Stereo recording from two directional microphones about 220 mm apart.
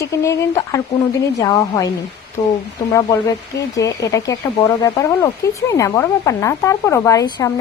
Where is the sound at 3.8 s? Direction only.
15° left (ahead or behind).